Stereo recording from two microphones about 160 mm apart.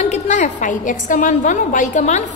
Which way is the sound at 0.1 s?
50° left (ahead or behind).